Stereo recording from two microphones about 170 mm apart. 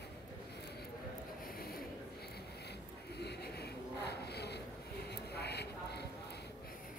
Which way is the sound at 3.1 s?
75° left (ahead or behind).